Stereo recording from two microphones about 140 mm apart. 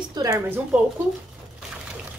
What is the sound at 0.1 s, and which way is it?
Speech, 25° right (ahead or behind).